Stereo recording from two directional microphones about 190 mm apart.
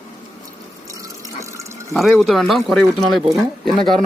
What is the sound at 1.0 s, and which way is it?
Water, 15° right (ahead or behind).